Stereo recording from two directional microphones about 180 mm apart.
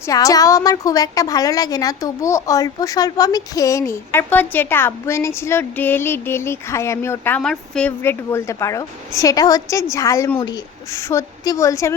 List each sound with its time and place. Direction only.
0.1 s a woman's voice: 20° left (ahead or behind)